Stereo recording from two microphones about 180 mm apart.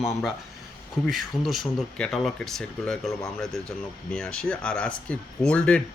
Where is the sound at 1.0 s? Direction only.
Centre (ahead or behind).